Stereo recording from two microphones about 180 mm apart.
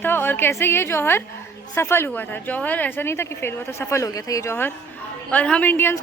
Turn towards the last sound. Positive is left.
turn(degrees=10)  # may be behind; listen again after turning